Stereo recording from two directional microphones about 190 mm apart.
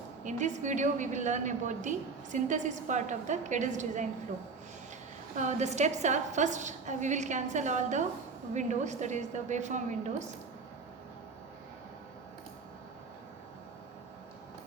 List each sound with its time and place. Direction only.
0.3 s a woman's voice: 40° right (ahead or behind)
5.4 s a woman's voice: 40° right (ahead or behind)